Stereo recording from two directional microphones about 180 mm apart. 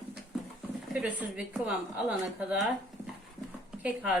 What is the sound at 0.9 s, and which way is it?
A woman's voice, 5° right (ahead or behind).